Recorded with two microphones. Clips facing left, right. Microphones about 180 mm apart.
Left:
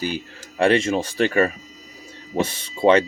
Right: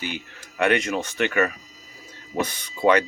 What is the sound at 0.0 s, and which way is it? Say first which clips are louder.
Speech: left 5 dB; 35° left (ahead or behind).